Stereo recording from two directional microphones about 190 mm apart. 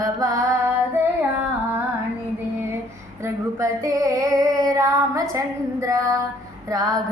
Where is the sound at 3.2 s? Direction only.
15° right (ahead or behind).